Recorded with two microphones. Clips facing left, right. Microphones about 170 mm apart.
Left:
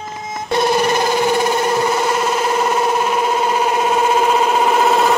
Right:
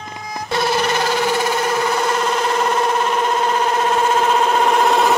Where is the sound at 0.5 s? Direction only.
20° left (ahead or behind).